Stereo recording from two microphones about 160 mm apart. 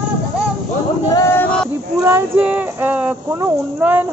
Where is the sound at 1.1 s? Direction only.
20° left (ahead or behind).